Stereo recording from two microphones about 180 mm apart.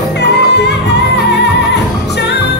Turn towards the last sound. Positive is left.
turn(degrees=70)  # may be behind; listen again after turning